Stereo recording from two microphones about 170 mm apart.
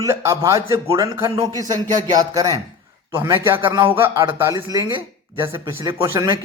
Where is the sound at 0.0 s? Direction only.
15° right (ahead or behind).